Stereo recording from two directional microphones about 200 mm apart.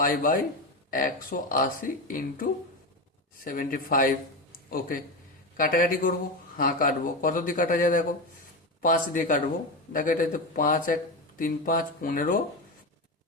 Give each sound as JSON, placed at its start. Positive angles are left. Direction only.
{"t": 0.0, "sound": "speech", "side_deg": 45}